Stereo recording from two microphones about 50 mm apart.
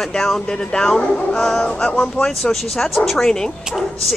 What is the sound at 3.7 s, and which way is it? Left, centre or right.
Speech, centre.